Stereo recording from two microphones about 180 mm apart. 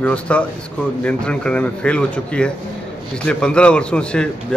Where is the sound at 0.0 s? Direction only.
5° left (ahead or behind).